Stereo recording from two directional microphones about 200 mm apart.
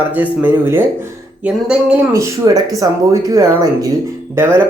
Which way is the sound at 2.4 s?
20° right (ahead or behind).